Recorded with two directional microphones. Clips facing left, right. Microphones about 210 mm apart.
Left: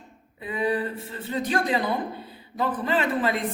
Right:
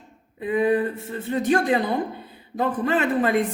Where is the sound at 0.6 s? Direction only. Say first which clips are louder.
Right 4 dB; 45° right (ahead or behind).